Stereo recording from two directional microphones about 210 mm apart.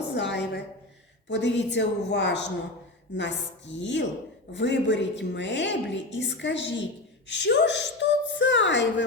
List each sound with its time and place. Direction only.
0.1 s a woman's voice: 55° left (ahead or behind)